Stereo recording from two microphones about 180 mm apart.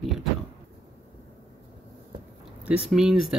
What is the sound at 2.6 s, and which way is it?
Speech, 5° right (ahead or behind).